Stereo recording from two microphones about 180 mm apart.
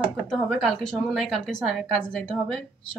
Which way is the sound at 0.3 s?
Centre (ahead or behind).